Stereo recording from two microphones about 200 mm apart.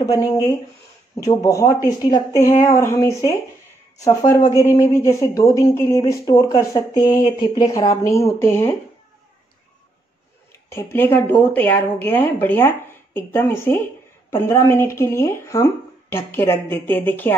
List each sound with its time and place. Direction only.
0.0 s a woman's voice: 15° left (ahead or behind)
10.7 s a woman's voice: 10° left (ahead or behind)